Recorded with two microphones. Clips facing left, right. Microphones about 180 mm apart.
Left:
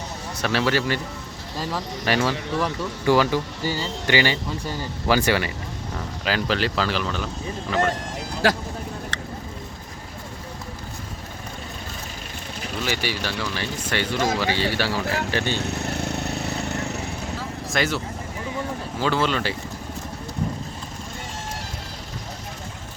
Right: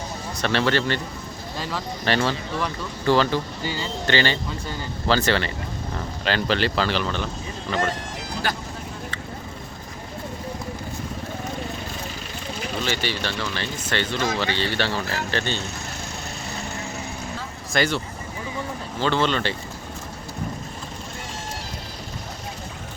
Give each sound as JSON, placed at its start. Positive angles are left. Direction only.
{"t": 0.4, "sound": "speech", "side_deg": 5}
{"t": 3.6, "sound": "speech", "side_deg": 40}
{"t": 4.0, "sound": "speech", "side_deg": 10}
{"t": 8.4, "sound": "speech", "side_deg": 90}
{"t": 12.8, "sound": "speech", "side_deg": 10}
{"t": 15.6, "sound": "vehicle", "side_deg": 65}
{"t": 17.7, "sound": "speech", "side_deg": 0}